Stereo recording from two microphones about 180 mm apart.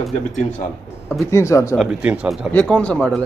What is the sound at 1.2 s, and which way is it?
Speech, 15° left (ahead or behind).